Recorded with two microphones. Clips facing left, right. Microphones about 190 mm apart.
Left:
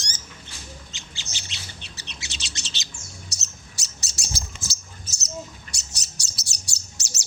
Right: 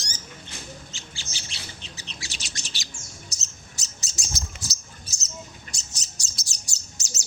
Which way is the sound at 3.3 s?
70° left (ahead or behind).